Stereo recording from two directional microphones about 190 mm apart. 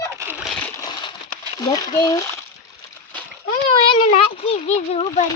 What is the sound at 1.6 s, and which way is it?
Speech, 20° left (ahead or behind).